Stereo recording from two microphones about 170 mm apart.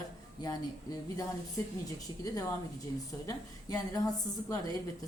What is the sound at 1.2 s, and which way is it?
A woman's voice, 20° left (ahead or behind).